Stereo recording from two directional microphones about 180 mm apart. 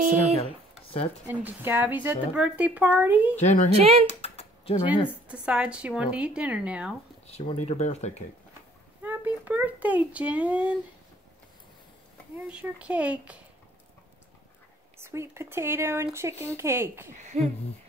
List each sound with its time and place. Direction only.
0.0 s a sound: 45° right (ahead or behind)
1.2 s a child's voice: 10° right (ahead or behind)
3.3 s speech: 40° left (ahead or behind)
3.7 s speech: 35° right (ahead or behind)
4.1 s typing: 35° left (ahead or behind)
5.3 s a woman's voice: 5° right (ahead or behind)
7.2 s speech: 35° left (ahead or behind)
9.0 s a child's voice: 10° right (ahead or behind)
12.4 s a child's voice: 5° right (ahead or behind)
15.0 s a child's voice: 15° right (ahead or behind)
17.2 s speech: 40° right (ahead or behind)